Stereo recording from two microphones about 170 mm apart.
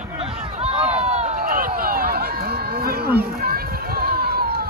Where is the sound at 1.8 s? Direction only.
60° right (ahead or behind).